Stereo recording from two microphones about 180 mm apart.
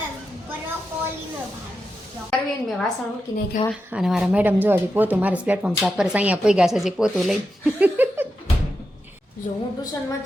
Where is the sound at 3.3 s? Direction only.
20° left (ahead or behind).